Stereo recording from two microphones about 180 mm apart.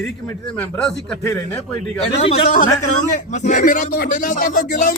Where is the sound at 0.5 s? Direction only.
5° left (ahead or behind).